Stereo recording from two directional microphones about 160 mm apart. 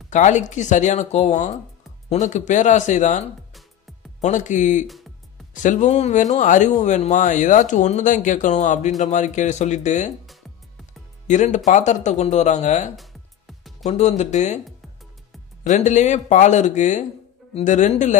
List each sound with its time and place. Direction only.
0.1 s speech: 50° left (ahead or behind)
4.8 s speech: centre (ahead or behind)
5.5 s speech: 50° left (ahead or behind)
11.2 s speech: 50° left (ahead or behind)
12.9 s music: centre (ahead or behind)
13.8 s speech: 45° left (ahead or behind)
15.6 s speech: 50° left (ahead or behind)